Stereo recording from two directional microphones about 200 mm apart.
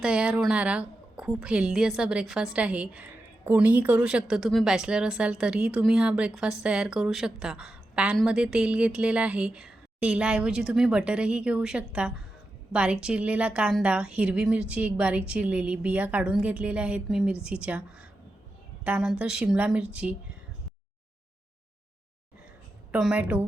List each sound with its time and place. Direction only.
0.0 s a woman's voice: 5° right (ahead or behind)
18.9 s a woman's voice: 5° right (ahead or behind)
22.9 s a woman's voice: 5° right (ahead or behind)